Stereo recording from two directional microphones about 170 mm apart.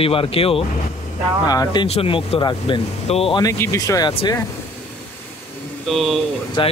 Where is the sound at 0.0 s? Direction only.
30° left (ahead or behind).